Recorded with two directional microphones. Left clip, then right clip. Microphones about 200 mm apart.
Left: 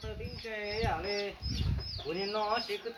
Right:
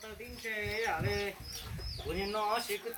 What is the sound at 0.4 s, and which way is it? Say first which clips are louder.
Speech: even; 25° right (ahead or behind).